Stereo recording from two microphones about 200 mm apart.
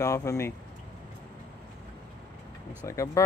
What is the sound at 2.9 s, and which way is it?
Speech, 15° left (ahead or behind).